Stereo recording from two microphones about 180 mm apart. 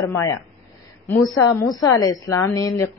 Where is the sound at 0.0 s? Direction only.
15° left (ahead or behind).